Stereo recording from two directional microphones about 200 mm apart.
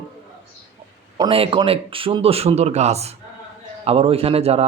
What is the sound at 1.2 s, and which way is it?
A man's voice, 30° right (ahead or behind).